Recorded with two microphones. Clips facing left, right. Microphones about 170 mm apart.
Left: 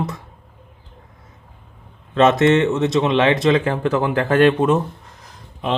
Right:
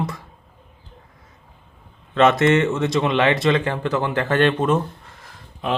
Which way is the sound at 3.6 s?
40° left (ahead or behind).